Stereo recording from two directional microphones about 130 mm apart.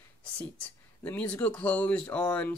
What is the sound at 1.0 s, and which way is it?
Speech, 10° left (ahead or behind).